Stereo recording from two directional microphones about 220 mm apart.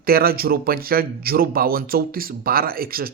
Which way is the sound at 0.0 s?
45° right (ahead or behind).